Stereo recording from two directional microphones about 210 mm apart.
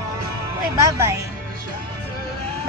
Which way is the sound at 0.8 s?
15° right (ahead or behind).